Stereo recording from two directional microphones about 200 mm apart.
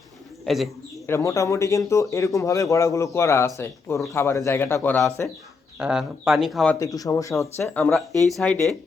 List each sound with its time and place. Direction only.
0.4 s speech: centre (ahead or behind)
1.0 s speech: 15° left (ahead or behind)
5.8 s speech: 5° right (ahead or behind)
6.7 s speech: 15° left (ahead or behind)